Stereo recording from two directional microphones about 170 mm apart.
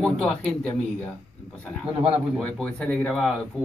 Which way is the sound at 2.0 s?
30° right (ahead or behind).